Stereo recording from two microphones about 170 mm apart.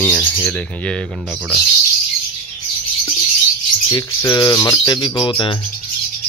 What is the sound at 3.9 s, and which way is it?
Speech, 20° left (ahead or behind).